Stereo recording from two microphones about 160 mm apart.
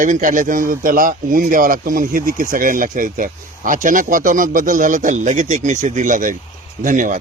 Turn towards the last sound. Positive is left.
turn(degrees=-55)  # may be behind; listen again after turning